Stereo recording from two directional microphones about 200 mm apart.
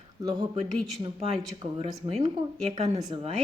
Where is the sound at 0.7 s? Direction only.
Centre (ahead or behind).